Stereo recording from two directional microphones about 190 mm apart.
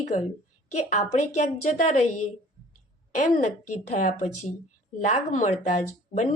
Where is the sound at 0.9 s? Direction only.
40° left (ahead or behind).